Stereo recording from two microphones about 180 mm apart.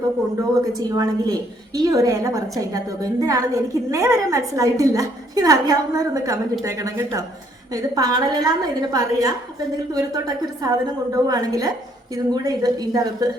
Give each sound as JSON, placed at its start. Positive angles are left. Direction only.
{"t": 0.6, "sound": "a woman's voice", "side_deg": -20}